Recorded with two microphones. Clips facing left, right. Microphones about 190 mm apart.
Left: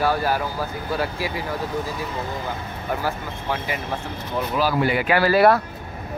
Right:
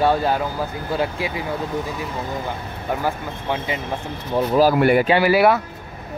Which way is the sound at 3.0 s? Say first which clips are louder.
Right 2 dB; 20° right (ahead or behind).